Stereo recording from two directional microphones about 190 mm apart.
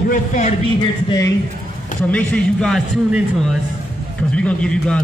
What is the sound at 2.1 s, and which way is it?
A man's voice, 5° left (ahead or behind).